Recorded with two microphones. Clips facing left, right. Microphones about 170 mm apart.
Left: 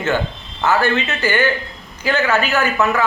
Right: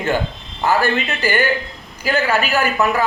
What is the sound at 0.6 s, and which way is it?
Speech, 35° right (ahead or behind).